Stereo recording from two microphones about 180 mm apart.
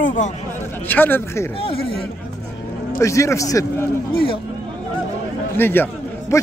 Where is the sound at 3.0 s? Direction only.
15° left (ahead or behind).